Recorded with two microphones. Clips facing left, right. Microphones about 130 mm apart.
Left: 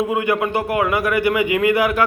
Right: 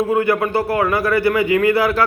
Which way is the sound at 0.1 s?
15° left (ahead or behind).